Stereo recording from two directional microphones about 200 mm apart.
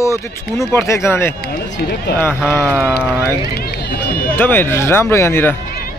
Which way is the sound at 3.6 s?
50° left (ahead or behind).